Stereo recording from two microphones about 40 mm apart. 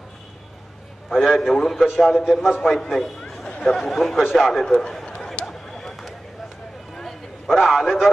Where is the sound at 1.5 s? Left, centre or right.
Centre.